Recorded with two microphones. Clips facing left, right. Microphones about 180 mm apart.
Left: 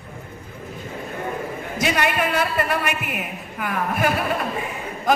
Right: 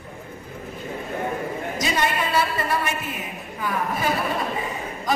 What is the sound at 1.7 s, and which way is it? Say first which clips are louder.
Speech: left 3 dB; 65° left (ahead or behind).